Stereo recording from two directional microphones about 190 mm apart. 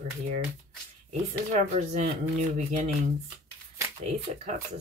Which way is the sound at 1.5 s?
40° right (ahead or behind).